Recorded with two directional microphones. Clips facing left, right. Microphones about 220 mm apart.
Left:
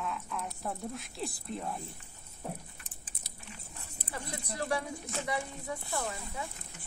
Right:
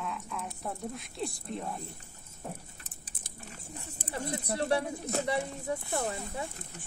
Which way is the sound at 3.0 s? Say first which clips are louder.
Right 1 dB; 50° right (ahead or behind).